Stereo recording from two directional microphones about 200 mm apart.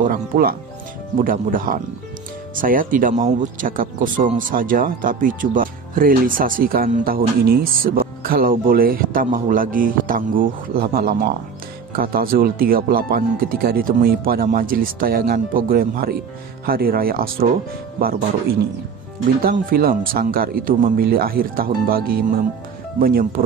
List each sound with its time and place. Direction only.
0.0 s speech: 45° right (ahead or behind)